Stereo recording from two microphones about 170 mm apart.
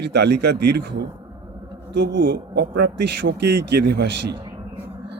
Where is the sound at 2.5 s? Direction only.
75° right (ahead or behind).